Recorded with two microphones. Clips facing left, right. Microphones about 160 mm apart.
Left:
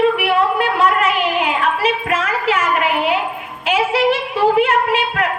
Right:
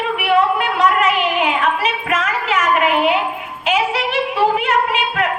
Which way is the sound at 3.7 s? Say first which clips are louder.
Left 3 dB; 35° left (ahead or behind).